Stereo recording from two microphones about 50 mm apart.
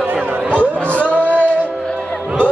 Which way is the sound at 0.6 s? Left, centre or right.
Right.